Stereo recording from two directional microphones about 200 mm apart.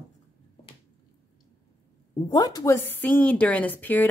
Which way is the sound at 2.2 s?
20° left (ahead or behind).